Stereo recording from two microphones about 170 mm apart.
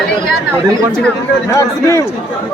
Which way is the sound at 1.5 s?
15° left (ahead or behind).